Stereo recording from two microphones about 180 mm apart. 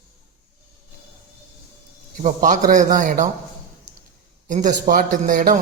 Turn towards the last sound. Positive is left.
turn(degrees=-50)  # may be behind; listen again after turning